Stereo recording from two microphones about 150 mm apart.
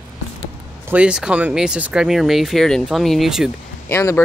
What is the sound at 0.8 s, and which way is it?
Speech, 10° right (ahead or behind).